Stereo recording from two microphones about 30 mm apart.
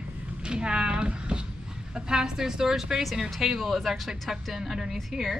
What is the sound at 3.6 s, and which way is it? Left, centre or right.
A woman's voice, centre.